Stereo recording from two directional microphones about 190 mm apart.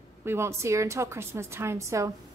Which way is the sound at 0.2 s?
15° right (ahead or behind).